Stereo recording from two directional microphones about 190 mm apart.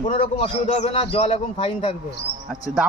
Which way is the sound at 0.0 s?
35° left (ahead or behind).